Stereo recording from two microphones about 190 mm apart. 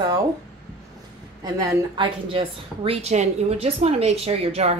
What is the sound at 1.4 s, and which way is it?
Speech, 20° right (ahead or behind).